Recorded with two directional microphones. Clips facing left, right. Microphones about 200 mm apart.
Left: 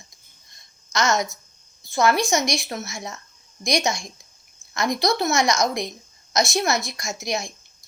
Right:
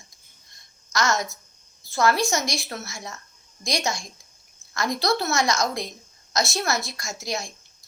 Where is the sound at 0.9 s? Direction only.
20° left (ahead or behind).